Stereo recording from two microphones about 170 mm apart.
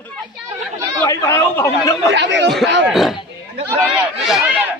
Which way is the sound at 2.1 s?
90° right.